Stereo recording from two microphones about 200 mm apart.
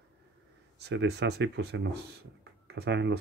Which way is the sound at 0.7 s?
60° right (ahead or behind).